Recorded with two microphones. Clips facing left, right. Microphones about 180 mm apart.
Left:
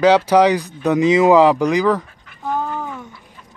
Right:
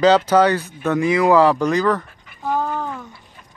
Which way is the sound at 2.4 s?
Centre (ahead or behind).